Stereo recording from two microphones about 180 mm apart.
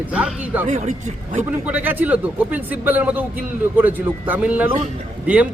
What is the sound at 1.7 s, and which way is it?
Speech, 10° right (ahead or behind).